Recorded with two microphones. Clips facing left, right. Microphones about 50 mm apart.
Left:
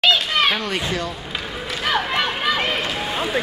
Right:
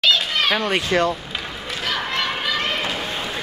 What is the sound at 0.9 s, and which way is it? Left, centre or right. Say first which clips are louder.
Speech: right 7 dB; right.